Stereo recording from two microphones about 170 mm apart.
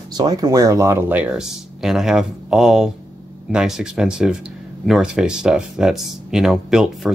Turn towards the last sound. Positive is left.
turn(degrees=0)  # may be behind; listen again after turning